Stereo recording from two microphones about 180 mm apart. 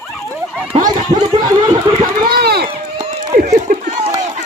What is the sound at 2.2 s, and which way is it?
Run, 60° right (ahead or behind).